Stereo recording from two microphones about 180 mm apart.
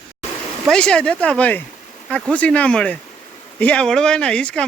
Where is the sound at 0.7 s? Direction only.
5° left (ahead or behind).